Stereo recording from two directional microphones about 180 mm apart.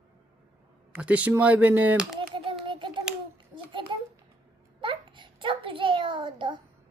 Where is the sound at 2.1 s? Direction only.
30° right (ahead or behind).